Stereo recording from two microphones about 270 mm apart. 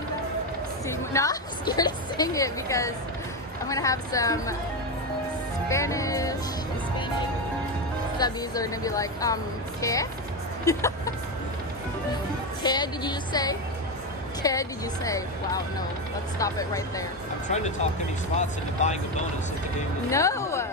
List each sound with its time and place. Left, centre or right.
0.8 s a woman's voice: centre
5.7 s a woman's voice: centre
8.2 s a woman's voice: centre
12.6 s a woman's voice: centre
17.5 s speech: left
20.1 s speech: centre